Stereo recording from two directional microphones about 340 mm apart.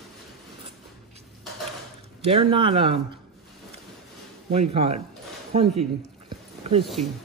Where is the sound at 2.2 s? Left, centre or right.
Centre.